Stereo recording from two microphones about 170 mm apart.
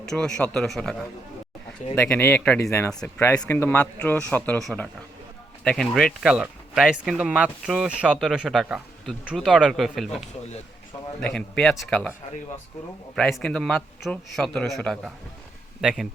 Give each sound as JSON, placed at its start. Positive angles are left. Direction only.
{"t": 0.0, "sound": "speech", "side_deg": 5}
{"t": 2.1, "sound": "speech", "side_deg": 10}
{"t": 13.1, "sound": "speech", "side_deg": 5}